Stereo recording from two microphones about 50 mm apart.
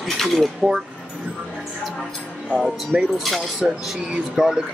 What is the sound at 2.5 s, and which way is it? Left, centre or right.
Speech, centre.